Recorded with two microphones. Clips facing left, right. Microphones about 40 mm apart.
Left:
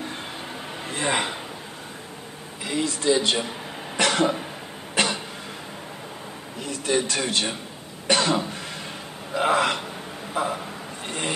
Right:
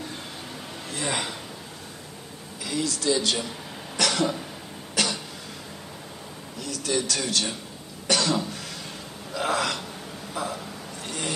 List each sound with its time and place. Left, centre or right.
0.8 s a man's voice: left
2.6 s speech: left
4.9 s a sound: left
6.6 s a man's voice: left
9.3 s gasp: left
10.3 s a sound: left